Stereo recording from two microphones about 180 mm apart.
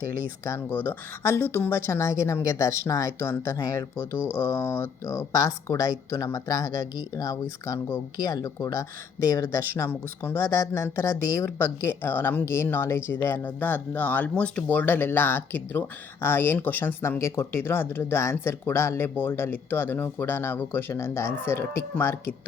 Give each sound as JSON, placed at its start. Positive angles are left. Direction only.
{"t": 0.0, "sound": "speech", "side_deg": -55}
{"t": 0.5, "sound": "speech", "side_deg": 10}
{"t": 1.2, "sound": "speech", "side_deg": -55}
{"t": 1.5, "sound": "speech", "side_deg": 10}
{"t": 5.8, "sound": "speech", "side_deg": -50}
{"t": 6.1, "sound": "speech", "side_deg": 15}
{"t": 7.7, "sound": "speech", "side_deg": 15}
{"t": 11.1, "sound": "speech", "side_deg": -55}
{"t": 11.4, "sound": "speech", "side_deg": 15}